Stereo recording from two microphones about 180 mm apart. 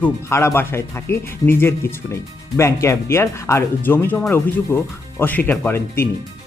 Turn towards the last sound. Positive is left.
turn(degrees=15)  # may be behind; listen again after turning